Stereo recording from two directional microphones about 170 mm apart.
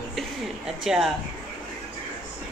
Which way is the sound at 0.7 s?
5° right (ahead or behind).